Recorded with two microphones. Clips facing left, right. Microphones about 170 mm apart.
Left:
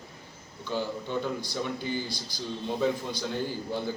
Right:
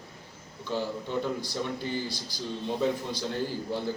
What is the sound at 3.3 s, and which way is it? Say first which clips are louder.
Speech: right 1 dB; centre (ahead or behind).